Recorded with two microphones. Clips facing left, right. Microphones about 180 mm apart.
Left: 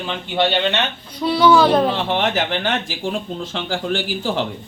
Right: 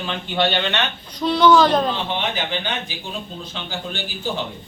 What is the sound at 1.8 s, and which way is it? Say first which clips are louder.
Speech: left 4 dB; 75° left (ahead or behind).